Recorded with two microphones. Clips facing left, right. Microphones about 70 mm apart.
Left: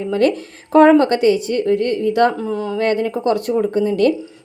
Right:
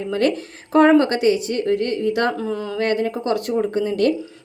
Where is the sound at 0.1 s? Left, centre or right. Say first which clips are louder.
Left 3 dB; left.